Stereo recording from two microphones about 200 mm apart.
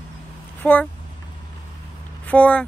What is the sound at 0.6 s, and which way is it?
Speech, 10° left (ahead or behind).